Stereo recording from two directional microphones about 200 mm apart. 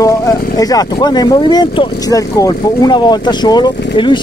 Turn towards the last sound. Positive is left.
turn(degrees=20)  # may be behind; listen again after turning